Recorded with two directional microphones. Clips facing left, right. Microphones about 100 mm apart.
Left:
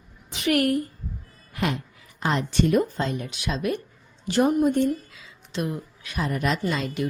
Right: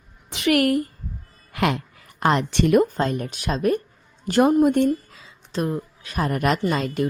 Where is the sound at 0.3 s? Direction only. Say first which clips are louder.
Right 3 dB; 90° right.